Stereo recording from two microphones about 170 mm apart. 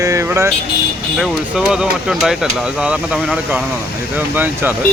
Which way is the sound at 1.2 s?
5° right (ahead or behind).